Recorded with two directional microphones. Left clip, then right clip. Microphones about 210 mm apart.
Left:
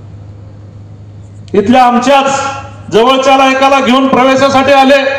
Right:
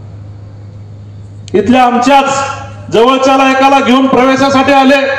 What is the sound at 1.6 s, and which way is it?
A man's voice, 25° left (ahead or behind).